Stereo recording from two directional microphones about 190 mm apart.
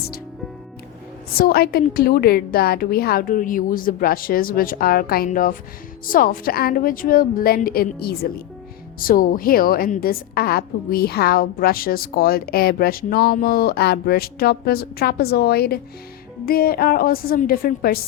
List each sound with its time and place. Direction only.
1.3 s a woman's voice: 55° left (ahead or behind)